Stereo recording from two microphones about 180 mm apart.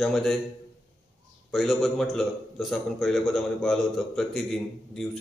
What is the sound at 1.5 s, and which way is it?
A man's voice, centre (ahead or behind).